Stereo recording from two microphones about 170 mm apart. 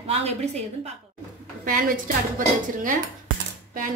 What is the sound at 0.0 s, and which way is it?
Speech, 35° right (ahead or behind).